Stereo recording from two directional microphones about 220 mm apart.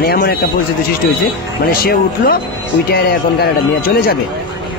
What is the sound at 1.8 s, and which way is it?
Speech, 40° left (ahead or behind).